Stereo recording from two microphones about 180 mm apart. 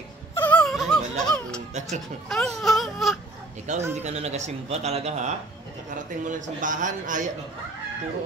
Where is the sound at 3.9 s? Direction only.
40° right (ahead or behind).